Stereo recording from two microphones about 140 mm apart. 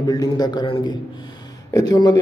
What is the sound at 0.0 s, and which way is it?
A man's voice, 25° left (ahead or behind).